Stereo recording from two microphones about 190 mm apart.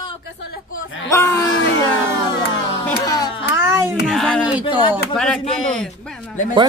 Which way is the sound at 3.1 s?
20° left (ahead or behind).